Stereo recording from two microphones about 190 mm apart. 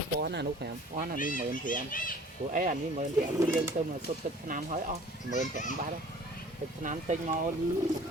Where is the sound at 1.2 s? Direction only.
45° left (ahead or behind).